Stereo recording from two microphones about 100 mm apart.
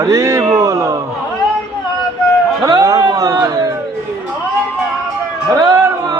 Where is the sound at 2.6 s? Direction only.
35° right (ahead or behind).